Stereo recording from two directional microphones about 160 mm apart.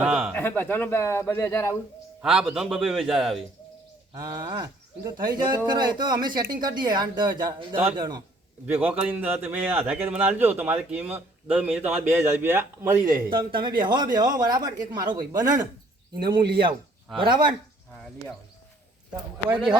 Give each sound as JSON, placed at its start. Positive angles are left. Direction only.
{"t": 0.0, "sound": "a sound", "side_deg": -5}
{"t": 0.3, "sound": "a man's voice", "side_deg": 15}
{"t": 2.2, "sound": "a man's voice", "side_deg": 0}
{"t": 4.1, "sound": "speech", "side_deg": -25}
{"t": 8.6, "sound": "a man's voice", "side_deg": -10}
{"t": 13.3, "sound": "speech", "side_deg": -30}
{"t": 19.5, "sound": "a man's voice", "side_deg": -5}